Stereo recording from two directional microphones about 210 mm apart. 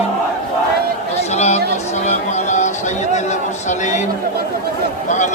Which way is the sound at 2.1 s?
35° left (ahead or behind).